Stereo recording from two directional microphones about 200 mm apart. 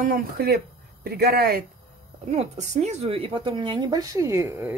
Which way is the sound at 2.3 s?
35° right (ahead or behind).